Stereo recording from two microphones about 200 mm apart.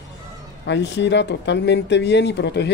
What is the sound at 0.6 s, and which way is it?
Speech, 60° left (ahead or behind).